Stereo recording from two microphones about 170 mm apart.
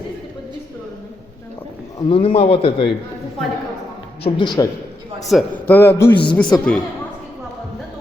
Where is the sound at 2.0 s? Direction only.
30° left (ahead or behind).